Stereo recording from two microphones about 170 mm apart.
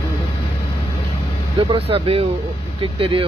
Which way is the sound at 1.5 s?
35° right (ahead or behind).